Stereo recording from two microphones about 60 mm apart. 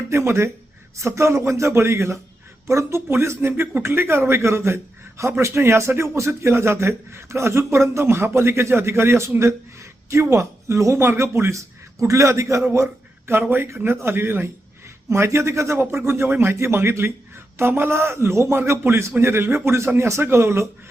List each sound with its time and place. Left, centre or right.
0.1 s speech: right
12.7 s a sound: right
13.4 s speech: right